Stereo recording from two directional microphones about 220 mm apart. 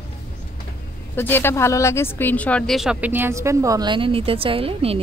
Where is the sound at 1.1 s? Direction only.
10° left (ahead or behind).